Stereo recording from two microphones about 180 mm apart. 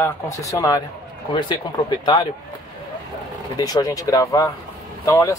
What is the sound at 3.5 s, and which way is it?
Speech, 20° left (ahead or behind).